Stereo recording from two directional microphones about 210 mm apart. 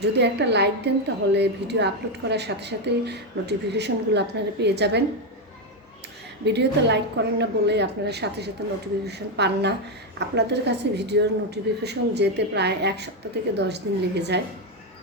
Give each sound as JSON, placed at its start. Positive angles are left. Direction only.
{"t": 0.0, "sound": "a woman's voice", "side_deg": -55}
{"t": 6.4, "sound": "a woman's voice", "side_deg": -55}